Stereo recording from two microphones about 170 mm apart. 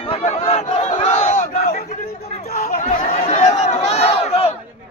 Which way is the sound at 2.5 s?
45° left (ahead or behind).